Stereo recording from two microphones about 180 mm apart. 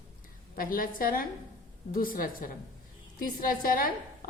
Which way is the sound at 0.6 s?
50° left (ahead or behind).